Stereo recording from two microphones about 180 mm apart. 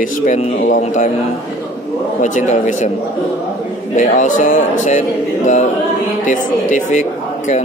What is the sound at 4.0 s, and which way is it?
Speech, 45° left (ahead or behind).